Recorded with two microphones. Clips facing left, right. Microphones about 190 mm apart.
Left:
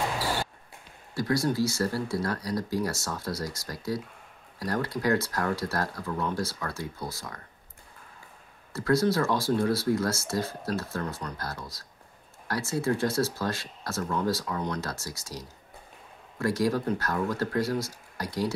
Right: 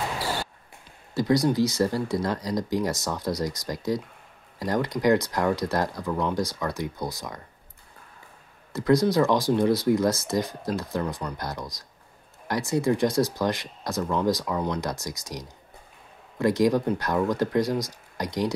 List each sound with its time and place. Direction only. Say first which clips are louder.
1.1 s speech: right 5 dB; 20° right (ahead or behind)
8.7 s speech: right 4 dB; 15° right (ahead or behind)